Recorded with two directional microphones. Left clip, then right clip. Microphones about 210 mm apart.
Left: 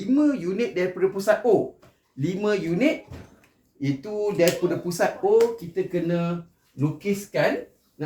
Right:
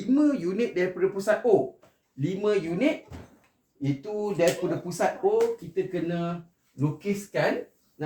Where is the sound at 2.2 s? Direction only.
15° left (ahead or behind).